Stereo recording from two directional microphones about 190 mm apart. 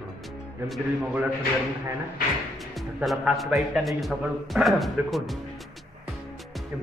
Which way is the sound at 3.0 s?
Centre (ahead or behind).